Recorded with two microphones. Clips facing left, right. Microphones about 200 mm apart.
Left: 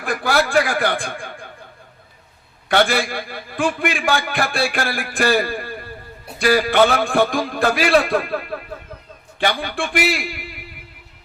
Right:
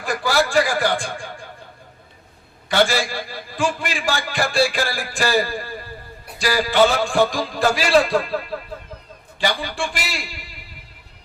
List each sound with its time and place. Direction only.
0.0 s a man's voice: 55° left (ahead or behind)
2.6 s a man's voice: 55° left (ahead or behind)